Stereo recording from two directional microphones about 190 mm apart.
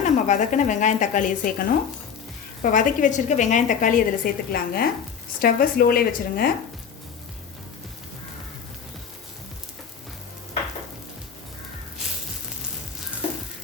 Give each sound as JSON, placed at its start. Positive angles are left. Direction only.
{"t": 0.0, "sound": "a woman's voice", "side_deg": 40}